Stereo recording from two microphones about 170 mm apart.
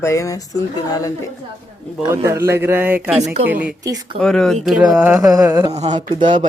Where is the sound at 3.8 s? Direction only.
20° right (ahead or behind).